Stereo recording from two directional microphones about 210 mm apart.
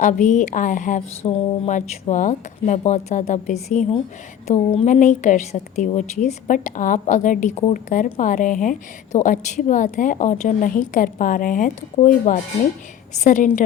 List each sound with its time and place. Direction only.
0.0 s a woman's voice: 35° left (ahead or behind)